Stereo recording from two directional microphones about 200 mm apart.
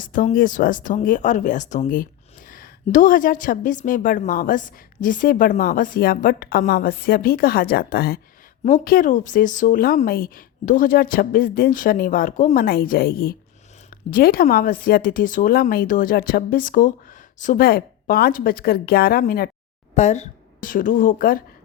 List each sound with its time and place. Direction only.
0.0 s a woman's voice: 40° left (ahead or behind)
19.9 s speech: 35° left (ahead or behind)